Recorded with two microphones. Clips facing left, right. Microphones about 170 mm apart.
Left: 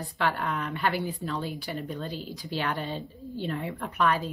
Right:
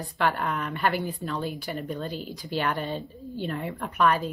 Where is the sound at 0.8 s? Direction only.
50° right (ahead or behind).